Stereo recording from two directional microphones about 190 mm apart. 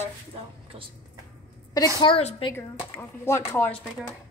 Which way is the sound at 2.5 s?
10° left (ahead or behind).